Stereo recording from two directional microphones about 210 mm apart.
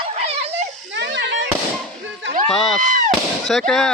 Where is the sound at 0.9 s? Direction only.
55° right (ahead or behind).